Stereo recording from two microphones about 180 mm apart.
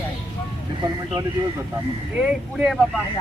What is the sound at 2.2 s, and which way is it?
Speech, 5° right (ahead or behind).